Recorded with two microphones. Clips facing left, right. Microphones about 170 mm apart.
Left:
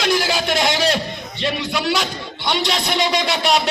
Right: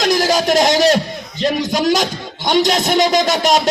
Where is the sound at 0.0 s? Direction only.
40° right (ahead or behind).